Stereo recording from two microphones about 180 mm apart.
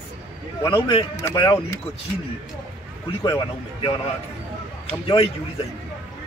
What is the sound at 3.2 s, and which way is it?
Speech, 25° left (ahead or behind).